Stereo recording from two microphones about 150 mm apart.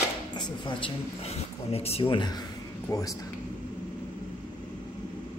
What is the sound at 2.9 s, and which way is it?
Speech, 20° left (ahead or behind).